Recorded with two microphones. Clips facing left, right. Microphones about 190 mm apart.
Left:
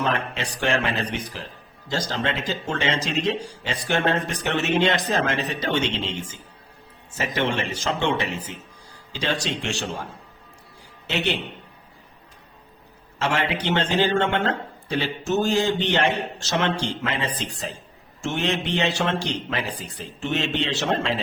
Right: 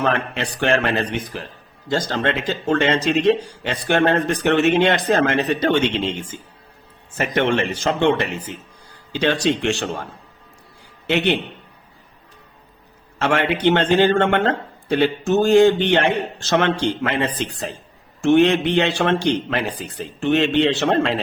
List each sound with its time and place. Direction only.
0.0 s speech: 60° right (ahead or behind)
11.0 s a man's voice: 60° right (ahead or behind)
13.1 s speech: 60° right (ahead or behind)